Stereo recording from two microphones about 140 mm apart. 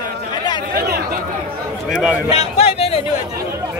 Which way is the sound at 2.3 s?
45° left (ahead or behind).